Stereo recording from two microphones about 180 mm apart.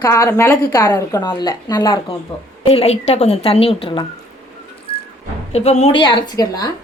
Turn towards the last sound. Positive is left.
turn(degrees=20)  # may be behind; listen again after turning